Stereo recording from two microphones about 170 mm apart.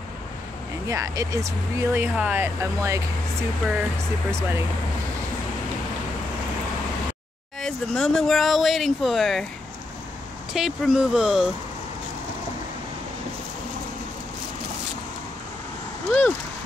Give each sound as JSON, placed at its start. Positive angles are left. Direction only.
{"t": 0.8, "sound": "speech", "side_deg": -20}
{"t": 7.6, "sound": "speech", "side_deg": 5}
{"t": 10.5, "sound": "speech", "side_deg": 0}
{"t": 16.1, "sound": "a sound", "side_deg": 0}